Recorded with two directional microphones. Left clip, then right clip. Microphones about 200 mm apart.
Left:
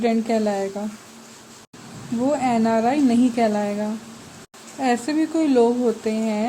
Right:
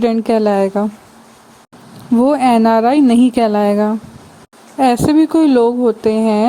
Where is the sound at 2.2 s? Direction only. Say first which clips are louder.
Right 9 dB; 45° right (ahead or behind).